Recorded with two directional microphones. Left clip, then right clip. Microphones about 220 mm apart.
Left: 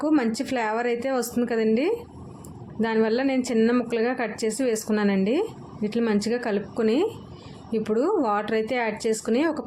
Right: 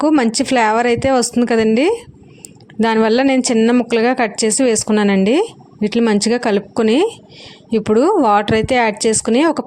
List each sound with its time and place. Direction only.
0.0 s speech: 40° right (ahead or behind)